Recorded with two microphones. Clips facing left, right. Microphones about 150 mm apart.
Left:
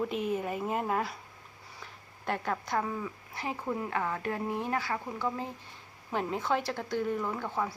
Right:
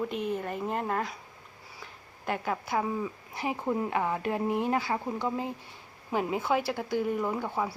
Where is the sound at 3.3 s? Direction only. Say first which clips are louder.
Right 4 dB; 15° right (ahead or behind).